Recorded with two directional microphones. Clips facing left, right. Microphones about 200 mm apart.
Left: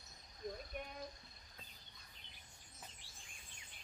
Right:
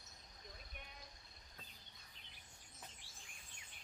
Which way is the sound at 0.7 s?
45° left (ahead or behind).